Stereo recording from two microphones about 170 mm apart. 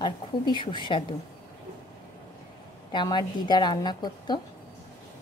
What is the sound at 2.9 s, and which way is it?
A woman's voice, 25° left (ahead or behind).